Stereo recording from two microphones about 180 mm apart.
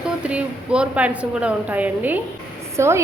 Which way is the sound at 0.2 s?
5° right (ahead or behind).